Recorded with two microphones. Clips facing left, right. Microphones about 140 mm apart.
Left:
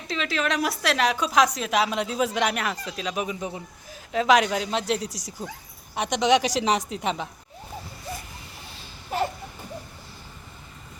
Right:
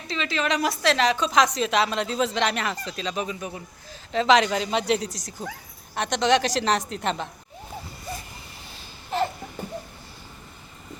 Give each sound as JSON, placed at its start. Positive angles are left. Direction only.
{"t": 0.1, "sound": "a woman's voice", "side_deg": 0}
{"t": 3.2, "sound": "a man's voice", "side_deg": 20}
{"t": 4.1, "sound": "a woman's voice", "side_deg": 5}
{"t": 9.1, "sound": "a sound", "side_deg": 5}